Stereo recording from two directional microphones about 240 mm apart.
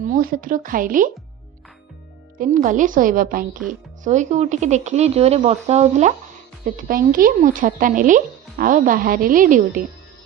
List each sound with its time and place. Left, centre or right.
0.0 s speech: right
2.4 s speech: right